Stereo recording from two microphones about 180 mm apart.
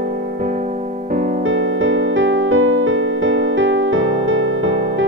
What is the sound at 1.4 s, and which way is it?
Music, 90° right.